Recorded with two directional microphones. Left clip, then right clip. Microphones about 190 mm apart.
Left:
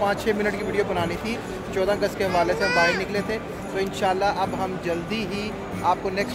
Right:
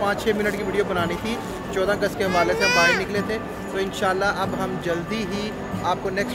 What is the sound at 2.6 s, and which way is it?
Speech, 20° right (ahead or behind).